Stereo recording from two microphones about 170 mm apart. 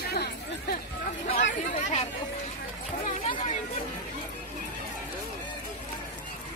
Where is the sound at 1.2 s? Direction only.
45° left (ahead or behind).